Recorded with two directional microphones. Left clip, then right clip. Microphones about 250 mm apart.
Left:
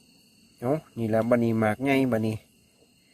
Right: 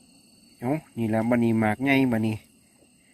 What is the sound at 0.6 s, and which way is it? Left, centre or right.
Speech, centre.